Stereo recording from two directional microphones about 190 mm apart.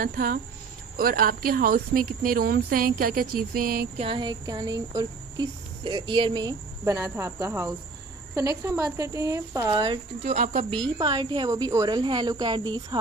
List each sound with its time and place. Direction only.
0.0 s a woman's voice: 50° right (ahead or behind)
4.0 s speech: 25° right (ahead or behind)
10.2 s speech: 40° right (ahead or behind)
10.8 s speech: 20° right (ahead or behind)